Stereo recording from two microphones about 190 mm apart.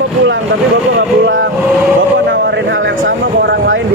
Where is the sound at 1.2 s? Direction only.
90° right.